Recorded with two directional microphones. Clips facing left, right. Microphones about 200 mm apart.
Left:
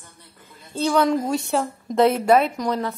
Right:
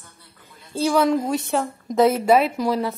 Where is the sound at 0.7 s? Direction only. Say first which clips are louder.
Right 1 dB; 5° right (ahead or behind).